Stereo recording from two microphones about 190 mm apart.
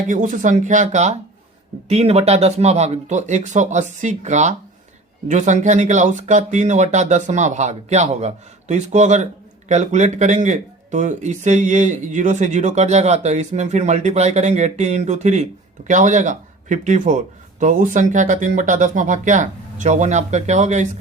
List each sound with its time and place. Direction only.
0.1 s speech: 40° right (ahead or behind)